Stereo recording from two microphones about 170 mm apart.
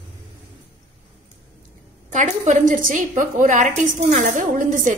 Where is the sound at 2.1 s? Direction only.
45° right (ahead or behind).